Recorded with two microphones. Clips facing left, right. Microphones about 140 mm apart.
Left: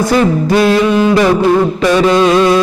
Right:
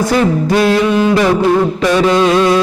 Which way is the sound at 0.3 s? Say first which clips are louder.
Left 1 dB; 15° left (ahead or behind).